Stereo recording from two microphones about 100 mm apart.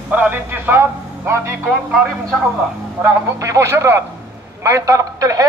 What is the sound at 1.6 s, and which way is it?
Speech, 10° right (ahead or behind).